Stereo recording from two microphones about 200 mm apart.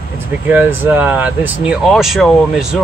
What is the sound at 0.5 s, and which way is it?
Speech, 10° right (ahead or behind).